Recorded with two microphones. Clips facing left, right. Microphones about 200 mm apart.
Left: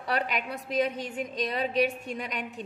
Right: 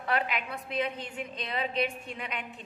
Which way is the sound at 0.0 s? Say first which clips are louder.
Left 1 dB; 40° left (ahead or behind).